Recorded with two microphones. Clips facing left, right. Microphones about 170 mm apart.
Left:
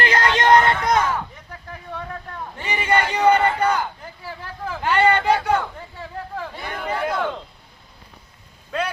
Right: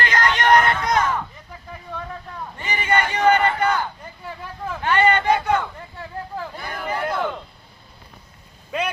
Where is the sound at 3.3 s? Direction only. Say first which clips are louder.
Left 1 dB; 10° left (ahead or behind).